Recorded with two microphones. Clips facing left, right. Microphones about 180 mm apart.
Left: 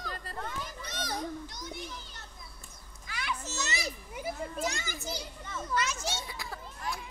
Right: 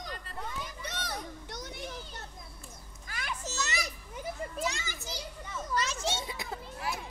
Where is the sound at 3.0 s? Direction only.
45° right (ahead or behind).